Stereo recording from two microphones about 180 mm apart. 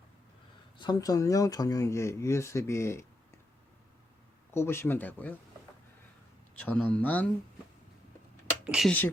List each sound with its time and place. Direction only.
0.8 s speech: 20° left (ahead or behind)
4.5 s speech: 15° left (ahead or behind)
6.6 s speech: 10° left (ahead or behind)
8.6 s speech: 5° right (ahead or behind)